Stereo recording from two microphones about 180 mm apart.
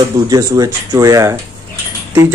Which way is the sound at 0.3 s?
20° right (ahead or behind).